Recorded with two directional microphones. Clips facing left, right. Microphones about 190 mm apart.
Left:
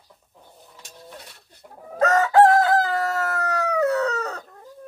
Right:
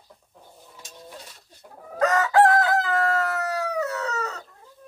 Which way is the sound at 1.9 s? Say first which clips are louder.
Left 3 dB; 25° left (ahead or behind).